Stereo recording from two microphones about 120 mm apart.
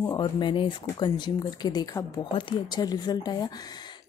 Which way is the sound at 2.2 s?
40° left (ahead or behind).